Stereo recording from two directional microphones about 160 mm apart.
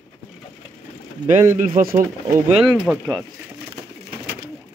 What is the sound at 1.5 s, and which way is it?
Speech, 55° right (ahead or behind).